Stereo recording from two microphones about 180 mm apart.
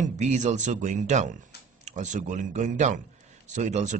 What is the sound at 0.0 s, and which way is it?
Speech, 40° right (ahead or behind).